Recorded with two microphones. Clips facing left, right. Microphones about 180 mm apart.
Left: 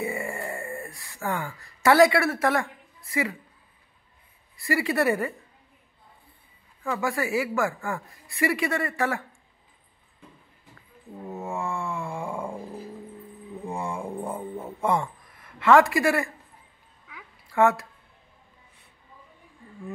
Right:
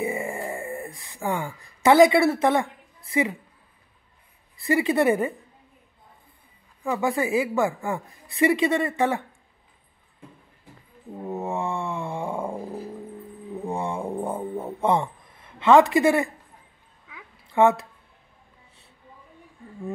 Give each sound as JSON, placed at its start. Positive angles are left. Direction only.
{"t": 0.0, "sound": "a sound", "side_deg": -20}
{"t": 3.1, "sound": "speech", "side_deg": -20}
{"t": 4.6, "sound": "speech", "side_deg": -20}
{"t": 6.8, "sound": "speech", "side_deg": -15}
{"t": 11.4, "sound": "speech", "side_deg": -20}
{"t": 13.7, "sound": "a sound", "side_deg": -20}
{"t": 17.5, "sound": "dog", "side_deg": -20}